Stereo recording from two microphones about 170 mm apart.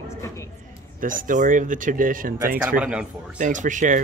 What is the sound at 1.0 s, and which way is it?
Speech, 50° right (ahead or behind).